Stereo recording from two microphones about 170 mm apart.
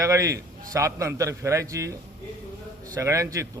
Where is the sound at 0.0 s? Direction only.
20° right (ahead or behind).